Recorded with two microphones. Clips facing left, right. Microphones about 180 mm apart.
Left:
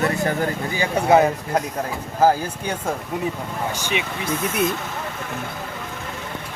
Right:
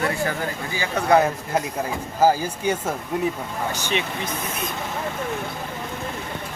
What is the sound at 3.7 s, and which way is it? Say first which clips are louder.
Speech: right 1 dB; 10° left (ahead or behind).